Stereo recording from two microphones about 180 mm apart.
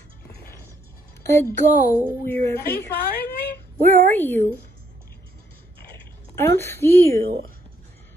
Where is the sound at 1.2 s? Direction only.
15° left (ahead or behind).